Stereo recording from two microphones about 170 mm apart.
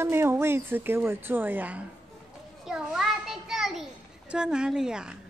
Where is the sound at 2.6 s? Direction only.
Centre (ahead or behind).